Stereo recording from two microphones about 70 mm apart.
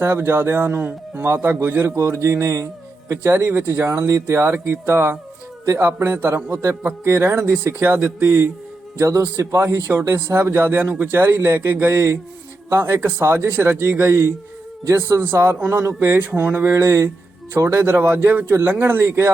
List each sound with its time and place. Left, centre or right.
0.0 s a man's voice: right
15.5 s speech: centre
15.8 s a man's voice: right